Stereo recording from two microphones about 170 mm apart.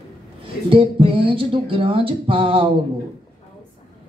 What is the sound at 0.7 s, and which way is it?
Speech, 35° right (ahead or behind).